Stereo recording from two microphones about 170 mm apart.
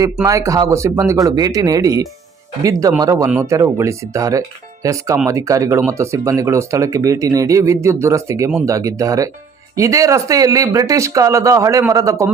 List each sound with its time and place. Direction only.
0.3 s speech: 20° right (ahead or behind)